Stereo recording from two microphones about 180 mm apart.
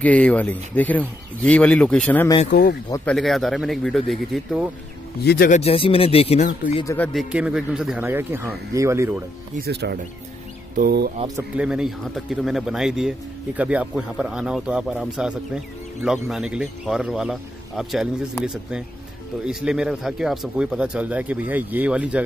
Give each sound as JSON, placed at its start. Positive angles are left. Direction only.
{"t": 0.0, "sound": "speech", "side_deg": 10}
{"t": 2.5, "sound": "speech", "side_deg": 60}
{"t": 3.1, "sound": "speech", "side_deg": 0}
{"t": 5.2, "sound": "speech", "side_deg": 65}
{"t": 5.5, "sound": "speech", "side_deg": 35}
{"t": 7.1, "sound": "speech", "side_deg": -5}
{"t": 9.6, "sound": "speech", "side_deg": -65}
{"t": 11.5, "sound": "speech", "side_deg": -5}